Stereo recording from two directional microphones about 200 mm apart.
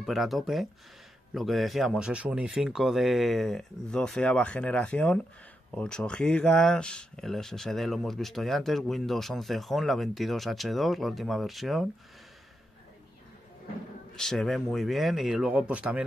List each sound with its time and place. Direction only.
0.0 s speech: centre (ahead or behind)
14.1 s speech: centre (ahead or behind)